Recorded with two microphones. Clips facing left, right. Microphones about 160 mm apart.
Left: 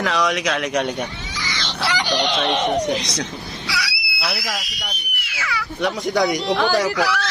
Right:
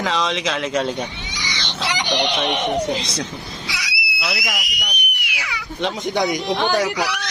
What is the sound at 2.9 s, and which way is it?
Speech, 30° right (ahead or behind).